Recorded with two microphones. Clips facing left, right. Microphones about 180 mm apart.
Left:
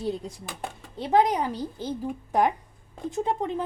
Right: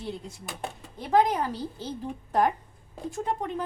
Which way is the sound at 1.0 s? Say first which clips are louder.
Left 1 dB; 20° left (ahead or behind).